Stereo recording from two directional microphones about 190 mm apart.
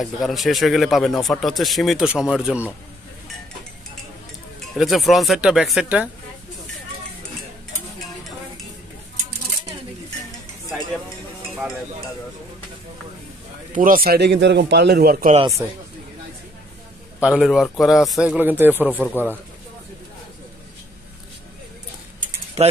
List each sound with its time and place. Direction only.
0.0 s speech: centre (ahead or behind)
4.7 s speech: centre (ahead or behind)
13.7 s a man's voice: 45° right (ahead or behind)
17.2 s speech: 5° right (ahead or behind)
18.9 s speech: 10° left (ahead or behind)